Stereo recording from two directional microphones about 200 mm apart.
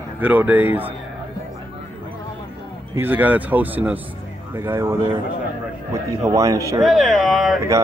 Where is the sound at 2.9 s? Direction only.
10° right (ahead or behind).